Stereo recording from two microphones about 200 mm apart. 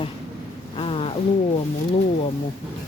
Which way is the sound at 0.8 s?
30° left (ahead or behind).